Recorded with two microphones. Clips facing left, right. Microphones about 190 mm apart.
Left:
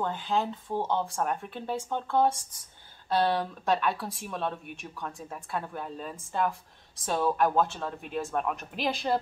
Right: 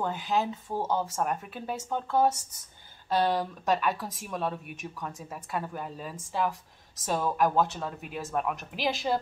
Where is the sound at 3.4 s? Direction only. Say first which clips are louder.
Even; 5° right (ahead or behind).